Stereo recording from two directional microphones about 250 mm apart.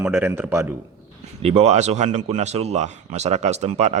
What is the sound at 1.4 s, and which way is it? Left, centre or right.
Speech, right.